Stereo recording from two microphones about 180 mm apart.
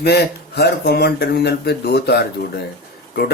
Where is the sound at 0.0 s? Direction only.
65° left (ahead or behind).